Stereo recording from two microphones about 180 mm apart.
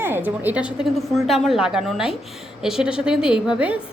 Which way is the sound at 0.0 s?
10° right (ahead or behind).